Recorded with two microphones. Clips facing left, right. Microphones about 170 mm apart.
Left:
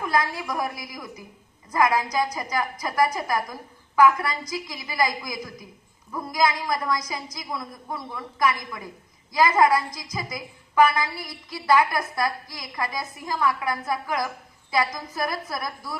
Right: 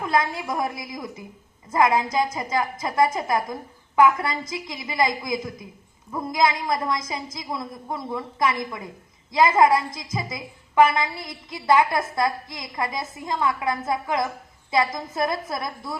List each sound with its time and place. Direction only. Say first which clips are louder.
0.0 s a woman's voice: right 2 dB; 25° right (ahead or behind)